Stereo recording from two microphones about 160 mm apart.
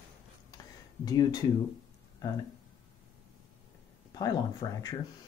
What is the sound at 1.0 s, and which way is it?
Speech, 25° left (ahead or behind).